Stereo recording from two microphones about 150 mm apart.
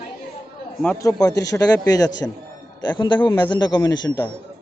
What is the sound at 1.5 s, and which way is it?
A man's voice, 20° left (ahead or behind).